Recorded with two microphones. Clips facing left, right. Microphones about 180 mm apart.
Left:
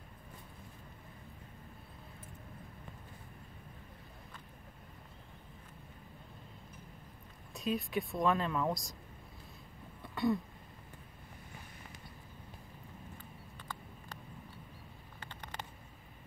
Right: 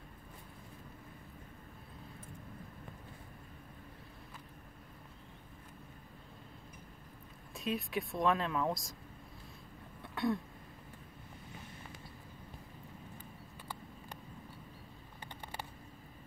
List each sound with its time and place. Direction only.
7.5 s speech: centre (ahead or behind)
10.0 s throat clearing: centre (ahead or behind)
15.1 s a sound: 15° right (ahead or behind)